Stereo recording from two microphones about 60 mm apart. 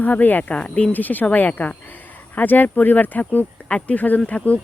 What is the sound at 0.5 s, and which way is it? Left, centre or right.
Speech, centre.